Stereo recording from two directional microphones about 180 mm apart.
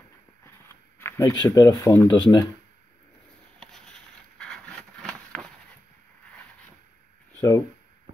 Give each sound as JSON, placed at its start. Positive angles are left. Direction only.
{"t": 0.9, "sound": "speech", "side_deg": 15}
{"t": 3.5, "sound": "a sound", "side_deg": 5}
{"t": 7.3, "sound": "speech", "side_deg": 15}